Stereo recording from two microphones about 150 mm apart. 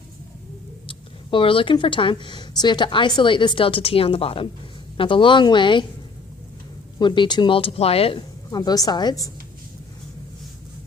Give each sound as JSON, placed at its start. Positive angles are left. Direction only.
{"t": 0.9, "sound": "speech", "side_deg": 35}
{"t": 7.0, "sound": "speech", "side_deg": 30}
{"t": 8.4, "sound": "a woman's voice", "side_deg": 25}